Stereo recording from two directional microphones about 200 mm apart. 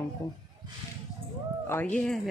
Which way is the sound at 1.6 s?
10° left (ahead or behind).